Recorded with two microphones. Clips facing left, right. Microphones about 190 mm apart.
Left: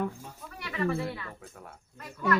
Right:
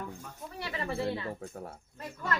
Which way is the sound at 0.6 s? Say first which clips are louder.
Left 3 dB; 30° right (ahead or behind).